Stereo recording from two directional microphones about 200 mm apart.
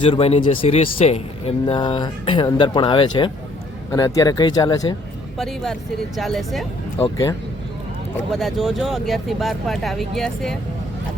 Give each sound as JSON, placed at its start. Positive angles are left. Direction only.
{"t": 0.0, "sound": "speech", "side_deg": 30}
{"t": 5.4, "sound": "speech", "side_deg": 0}
{"t": 8.3, "sound": "speech", "side_deg": 0}